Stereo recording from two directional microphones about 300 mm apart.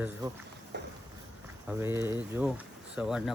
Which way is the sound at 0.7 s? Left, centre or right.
Right.